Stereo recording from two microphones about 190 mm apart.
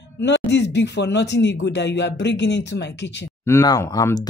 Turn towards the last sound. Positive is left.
turn(degrees=20)  # may be behind; listen again after turning